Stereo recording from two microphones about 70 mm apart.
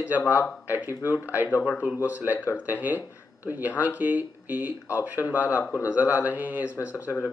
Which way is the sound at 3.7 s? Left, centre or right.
Left.